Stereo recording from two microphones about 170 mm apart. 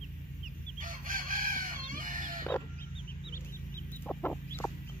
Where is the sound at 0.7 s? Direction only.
55° right (ahead or behind).